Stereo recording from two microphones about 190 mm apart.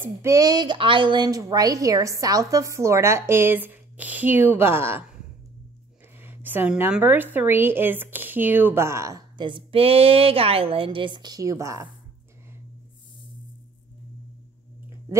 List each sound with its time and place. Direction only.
0.0 s a woman's voice: 15° right (ahead or behind)